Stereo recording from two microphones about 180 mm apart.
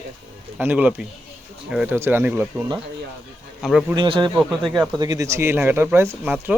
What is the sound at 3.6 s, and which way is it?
Speech, centre (ahead or behind).